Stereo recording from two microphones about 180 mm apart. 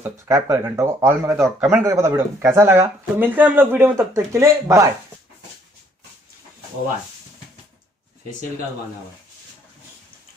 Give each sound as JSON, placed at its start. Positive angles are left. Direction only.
{"t": 0.0, "sound": "speech", "side_deg": -15}